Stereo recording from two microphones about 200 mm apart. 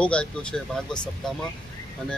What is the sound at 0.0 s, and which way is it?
Speech, 5° left (ahead or behind).